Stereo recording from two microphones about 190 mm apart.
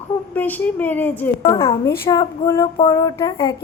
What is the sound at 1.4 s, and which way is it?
A woman's voice, 30° left (ahead or behind).